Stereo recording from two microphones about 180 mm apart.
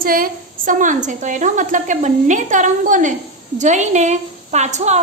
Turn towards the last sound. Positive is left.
turn(degrees=-40)  # may be behind; listen again after turning